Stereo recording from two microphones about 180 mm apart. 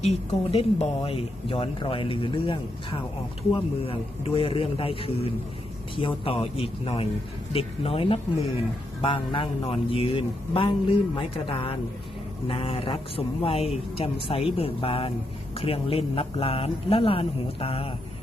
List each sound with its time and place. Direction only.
0.5 s speech: 30° left (ahead or behind)